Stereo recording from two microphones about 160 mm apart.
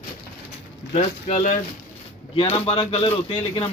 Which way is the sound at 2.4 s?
35° left (ahead or behind).